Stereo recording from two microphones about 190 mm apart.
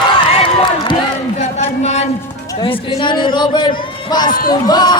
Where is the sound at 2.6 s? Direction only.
25° left (ahead or behind).